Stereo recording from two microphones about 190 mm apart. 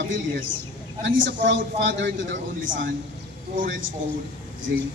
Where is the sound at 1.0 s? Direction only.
70° right (ahead or behind).